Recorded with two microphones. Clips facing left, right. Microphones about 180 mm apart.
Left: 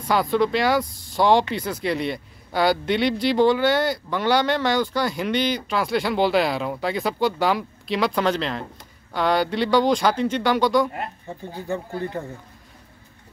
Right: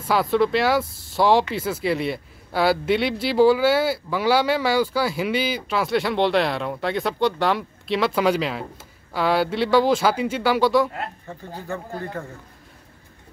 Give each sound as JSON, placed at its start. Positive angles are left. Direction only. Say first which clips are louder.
{"t": 0.0, "sound": "a man's voice", "louder": "right 1 dB", "side_deg": 0}
{"t": 11.3, "sound": "speech", "louder": "left 3 dB", "side_deg": 15}